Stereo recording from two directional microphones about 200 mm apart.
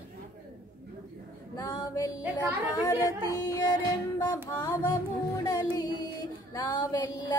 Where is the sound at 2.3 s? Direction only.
20° left (ahead or behind).